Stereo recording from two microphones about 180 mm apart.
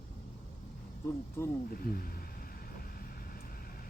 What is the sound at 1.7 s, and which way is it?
Speech, 55° left (ahead or behind).